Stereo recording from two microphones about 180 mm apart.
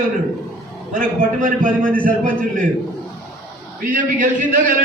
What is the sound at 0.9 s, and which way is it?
Speech, 50° right (ahead or behind).